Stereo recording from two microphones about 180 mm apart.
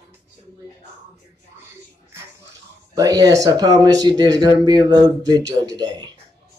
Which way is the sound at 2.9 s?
20° right (ahead or behind).